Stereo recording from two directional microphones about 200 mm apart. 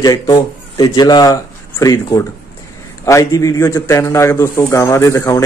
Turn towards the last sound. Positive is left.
turn(degrees=15)  # may be behind; listen again after turning